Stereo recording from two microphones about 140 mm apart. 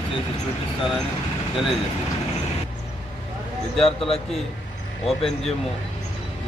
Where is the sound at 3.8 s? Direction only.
45° left (ahead or behind).